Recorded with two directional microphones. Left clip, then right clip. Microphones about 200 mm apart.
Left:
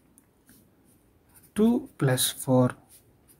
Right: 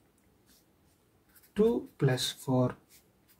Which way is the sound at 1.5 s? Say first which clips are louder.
Left 2 dB; 45° left (ahead or behind).